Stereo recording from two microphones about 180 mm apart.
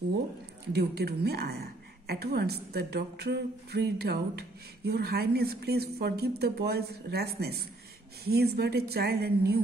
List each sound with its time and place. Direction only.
0.7 s a woman's voice: 65° right (ahead or behind)